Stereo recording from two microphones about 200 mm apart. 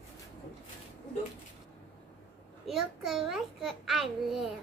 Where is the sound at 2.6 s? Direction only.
Centre (ahead or behind).